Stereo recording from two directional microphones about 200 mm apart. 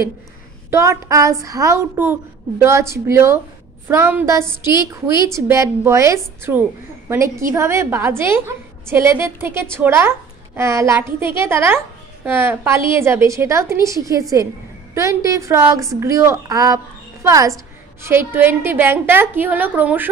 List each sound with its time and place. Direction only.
0.7 s a woman's voice: 15° right (ahead or behind)